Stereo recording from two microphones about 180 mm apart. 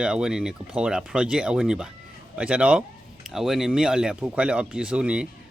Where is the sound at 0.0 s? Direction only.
5° right (ahead or behind).